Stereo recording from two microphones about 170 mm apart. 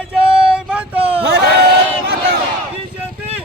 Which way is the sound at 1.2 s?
75° right (ahead or behind).